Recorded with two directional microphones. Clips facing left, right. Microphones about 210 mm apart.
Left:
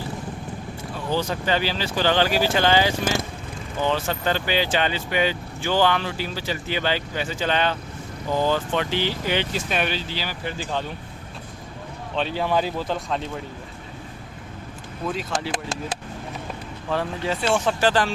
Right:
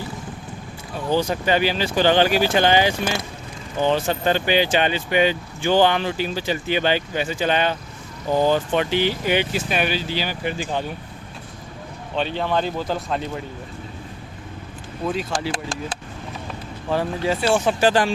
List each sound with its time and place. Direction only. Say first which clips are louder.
1.1 s speech: right 4 dB; 15° right (ahead or behind)
12.1 s speech: right 1 dB; 5° left (ahead or behind)
15.0 s speech: right 3 dB; centre (ahead or behind)
16.9 s speech: right 3 dB; 5° right (ahead or behind)